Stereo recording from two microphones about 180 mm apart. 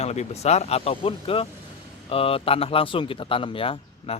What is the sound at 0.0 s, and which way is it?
Speech, 35° left (ahead or behind).